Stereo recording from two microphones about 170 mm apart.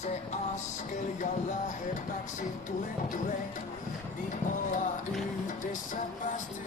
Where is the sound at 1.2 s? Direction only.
45° left (ahead or behind).